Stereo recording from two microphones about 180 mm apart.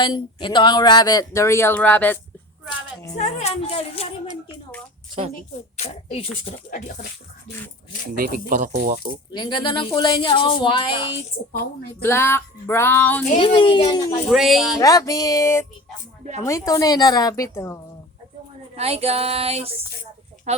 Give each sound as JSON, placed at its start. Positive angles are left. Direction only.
{"t": 0.0, "sound": "speech", "side_deg": 25}
{"t": 3.2, "sound": "speech", "side_deg": 40}
{"t": 5.3, "sound": "speech", "side_deg": 40}
{"t": 6.7, "sound": "speech", "side_deg": 45}
{"t": 8.1, "sound": "speech", "side_deg": -50}
{"t": 9.3, "sound": "speech", "side_deg": 25}
{"t": 12.0, "sound": "a sound", "side_deg": 15}
{"t": 13.4, "sound": "speech", "side_deg": 30}
{"t": 14.3, "sound": "speech", "side_deg": 0}
{"t": 14.8, "sound": "speech", "side_deg": 20}
{"t": 18.8, "sound": "a sound", "side_deg": -35}
{"t": 20.5, "sound": "speech", "side_deg": -40}